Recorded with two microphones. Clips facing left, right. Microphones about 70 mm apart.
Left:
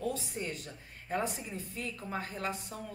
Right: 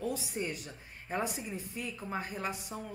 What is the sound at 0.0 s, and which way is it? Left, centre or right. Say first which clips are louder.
Speech: right 1 dB; centre.